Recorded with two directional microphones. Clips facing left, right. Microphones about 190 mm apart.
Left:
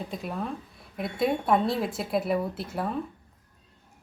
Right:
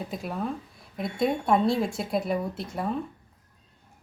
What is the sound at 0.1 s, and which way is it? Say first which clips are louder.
A woman's voice: right 1 dB; centre (ahead or behind).